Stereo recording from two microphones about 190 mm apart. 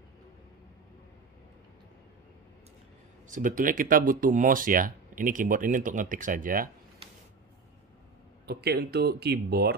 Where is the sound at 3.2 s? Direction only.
45° right (ahead or behind).